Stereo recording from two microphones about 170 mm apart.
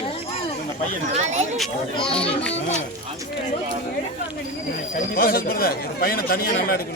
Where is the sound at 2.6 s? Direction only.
40° left (ahead or behind).